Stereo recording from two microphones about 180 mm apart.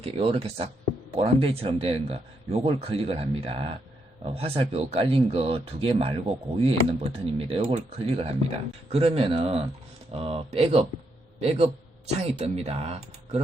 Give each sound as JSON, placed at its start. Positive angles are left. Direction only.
{"t": 0.0, "sound": "speech", "side_deg": -35}